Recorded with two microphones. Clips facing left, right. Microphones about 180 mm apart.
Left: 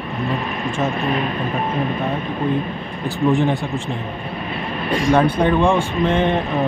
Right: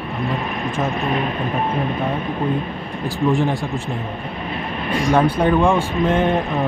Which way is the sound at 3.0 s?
35° right (ahead or behind).